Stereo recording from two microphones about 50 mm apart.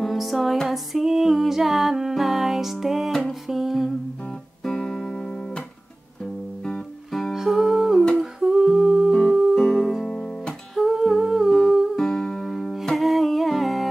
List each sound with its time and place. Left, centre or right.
0.0 s music: centre
3.4 s humming: centre
4.6 s guitar: centre
7.1 s music: centre
7.3 s music: centre
8.4 s humming: centre
9.1 s music: centre
10.0 s music: centre
10.7 s humming: centre
11.9 s music: centre
12.9 s humming: centre